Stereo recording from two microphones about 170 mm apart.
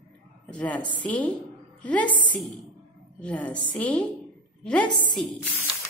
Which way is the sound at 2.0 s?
25° left (ahead or behind).